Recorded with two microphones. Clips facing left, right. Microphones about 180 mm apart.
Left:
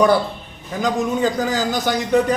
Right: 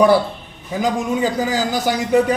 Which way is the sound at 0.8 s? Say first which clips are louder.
Even; 5° right (ahead or behind).